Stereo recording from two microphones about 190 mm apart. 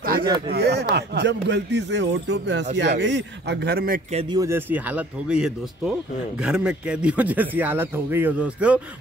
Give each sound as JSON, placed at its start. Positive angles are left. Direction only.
{"t": 0.5, "sound": "speech", "side_deg": -60}
{"t": 4.1, "sound": "speech", "side_deg": -30}
{"t": 4.4, "sound": "speech", "side_deg": -10}